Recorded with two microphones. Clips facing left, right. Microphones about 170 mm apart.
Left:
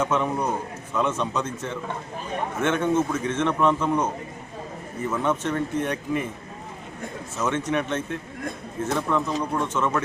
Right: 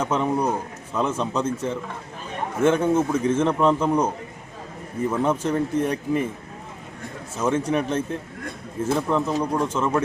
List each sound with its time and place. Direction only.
0.0 s a man's voice: 30° right (ahead or behind)
5.0 s a man's voice: 30° right (ahead or behind)
7.3 s a man's voice: 30° right (ahead or behind)